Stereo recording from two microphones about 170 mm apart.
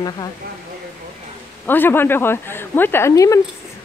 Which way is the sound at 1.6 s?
10° left (ahead or behind).